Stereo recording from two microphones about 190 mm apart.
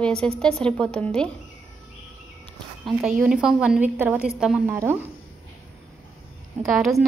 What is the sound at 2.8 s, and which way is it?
A woman's voice, 5° right (ahead or behind).